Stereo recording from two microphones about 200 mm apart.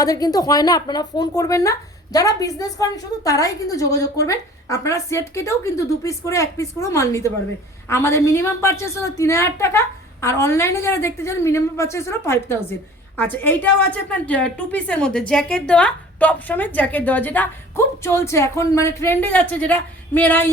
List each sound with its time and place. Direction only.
0.0 s a woman's voice: 20° left (ahead or behind)